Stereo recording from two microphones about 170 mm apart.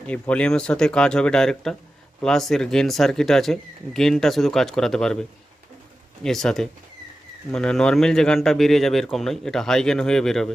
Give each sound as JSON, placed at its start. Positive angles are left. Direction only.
{"t": 0.1, "sound": "speech", "side_deg": 5}
{"t": 6.2, "sound": "speech", "side_deg": 5}